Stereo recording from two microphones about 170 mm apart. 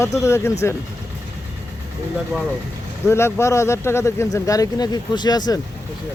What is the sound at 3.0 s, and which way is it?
Speech, 15° left (ahead or behind).